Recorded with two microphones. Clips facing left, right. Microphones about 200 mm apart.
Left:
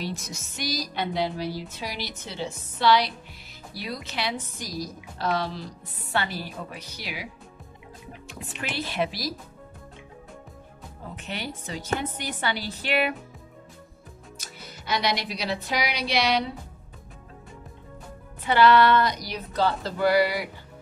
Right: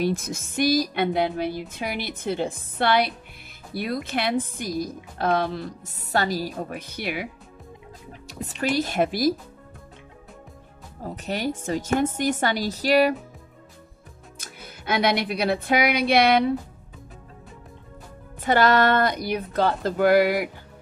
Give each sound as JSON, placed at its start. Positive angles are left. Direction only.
{"t": 0.0, "sound": "speech", "side_deg": -50}
{"t": 8.3, "sound": "speech", "side_deg": -40}
{"t": 11.1, "sound": "speech", "side_deg": -45}
{"t": 14.4, "sound": "speech", "side_deg": -55}
{"t": 18.4, "sound": "speech", "side_deg": -45}